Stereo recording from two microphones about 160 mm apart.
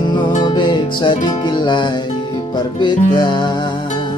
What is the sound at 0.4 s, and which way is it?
Music, 25° left (ahead or behind).